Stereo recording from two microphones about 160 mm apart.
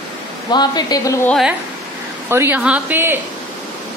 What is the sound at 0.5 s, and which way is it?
Speech, 25° left (ahead or behind).